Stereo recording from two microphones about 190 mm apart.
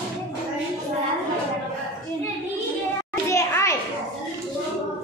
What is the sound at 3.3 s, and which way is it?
Children playing, 15° left (ahead or behind).